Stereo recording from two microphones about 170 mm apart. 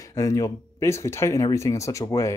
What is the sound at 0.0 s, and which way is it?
Speech, 20° left (ahead or behind).